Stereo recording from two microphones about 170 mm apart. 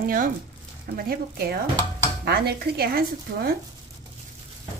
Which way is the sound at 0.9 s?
65° right (ahead or behind).